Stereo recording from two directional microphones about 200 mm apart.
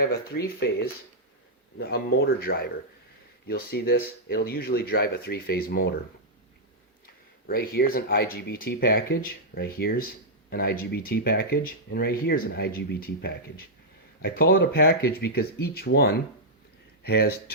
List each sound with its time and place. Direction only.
0.0 s speech: 50° left (ahead or behind)
7.4 s speech: 50° left (ahead or behind)